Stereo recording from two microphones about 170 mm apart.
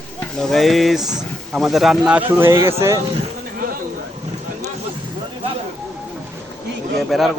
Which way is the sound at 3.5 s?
60° right (ahead or behind).